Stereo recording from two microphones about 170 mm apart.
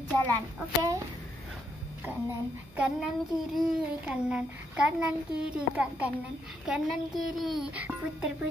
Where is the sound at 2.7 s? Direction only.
5° right (ahead or behind).